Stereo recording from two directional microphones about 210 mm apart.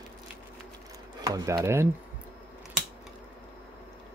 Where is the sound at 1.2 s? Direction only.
15° right (ahead or behind).